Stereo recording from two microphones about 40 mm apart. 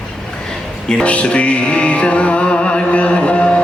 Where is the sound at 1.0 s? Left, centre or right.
Left.